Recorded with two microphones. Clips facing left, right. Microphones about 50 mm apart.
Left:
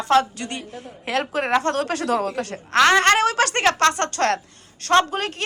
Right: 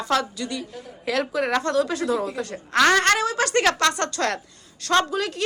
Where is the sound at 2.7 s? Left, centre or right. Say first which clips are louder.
Left 2 dB; left.